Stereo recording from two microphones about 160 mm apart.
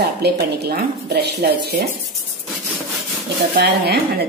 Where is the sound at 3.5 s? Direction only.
85° right.